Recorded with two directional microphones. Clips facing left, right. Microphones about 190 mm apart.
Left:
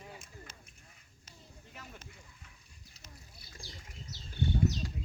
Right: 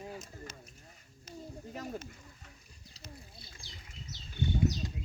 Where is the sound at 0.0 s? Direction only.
40° right (ahead or behind).